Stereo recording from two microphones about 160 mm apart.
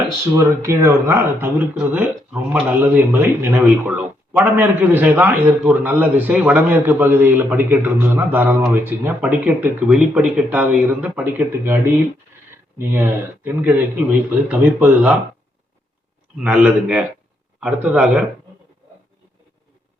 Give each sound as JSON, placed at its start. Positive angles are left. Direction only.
{"t": 0.3, "sound": "a man's voice", "side_deg": -15}
{"t": 12.8, "sound": "a man's voice", "side_deg": -15}
{"t": 16.4, "sound": "a man's voice", "side_deg": -5}